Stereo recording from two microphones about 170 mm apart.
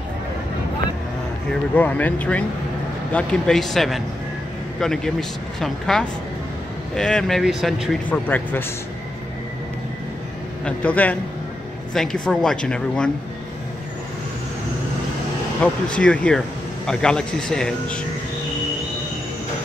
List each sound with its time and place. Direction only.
1.5 s speech: 10° left (ahead or behind)
8.1 s speech: 10° left (ahead or behind)
10.6 s speech: 10° left (ahead or behind)
15.6 s speech: 5° left (ahead or behind)